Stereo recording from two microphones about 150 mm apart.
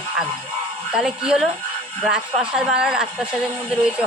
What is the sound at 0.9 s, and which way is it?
Speech, 5° right (ahead or behind).